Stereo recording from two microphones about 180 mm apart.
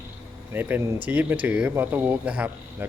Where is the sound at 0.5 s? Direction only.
10° right (ahead or behind).